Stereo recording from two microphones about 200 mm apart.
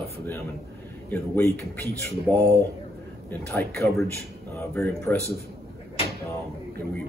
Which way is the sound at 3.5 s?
10° left (ahead or behind).